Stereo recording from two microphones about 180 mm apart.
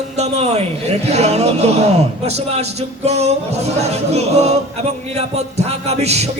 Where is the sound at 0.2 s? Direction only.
35° right (ahead or behind).